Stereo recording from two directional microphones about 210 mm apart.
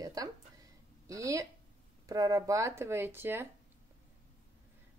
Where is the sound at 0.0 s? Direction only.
15° right (ahead or behind).